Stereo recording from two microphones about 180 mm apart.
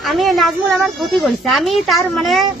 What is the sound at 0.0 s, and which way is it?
Speech, centre (ahead or behind).